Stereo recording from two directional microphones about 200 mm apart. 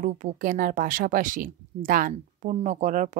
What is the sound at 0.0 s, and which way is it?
Speech, 40° right (ahead or behind).